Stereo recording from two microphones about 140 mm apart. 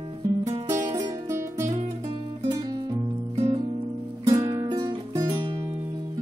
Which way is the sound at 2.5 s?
30° right (ahead or behind).